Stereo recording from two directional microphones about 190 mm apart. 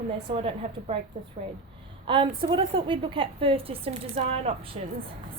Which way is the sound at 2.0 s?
25° right (ahead or behind).